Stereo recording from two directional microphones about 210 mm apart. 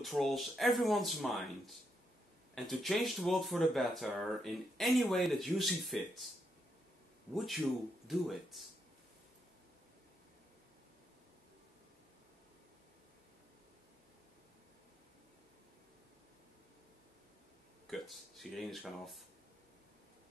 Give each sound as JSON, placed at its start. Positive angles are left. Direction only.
{"t": 0.0, "sound": "speech", "side_deg": 0}
{"t": 7.3, "sound": "speech", "side_deg": 0}
{"t": 17.8, "sound": "speech", "side_deg": 0}